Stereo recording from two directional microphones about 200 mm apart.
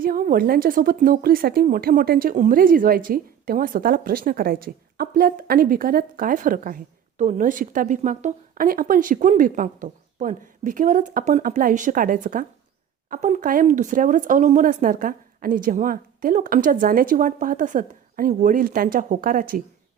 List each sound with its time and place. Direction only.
0.0 s speech: 45° right (ahead or behind)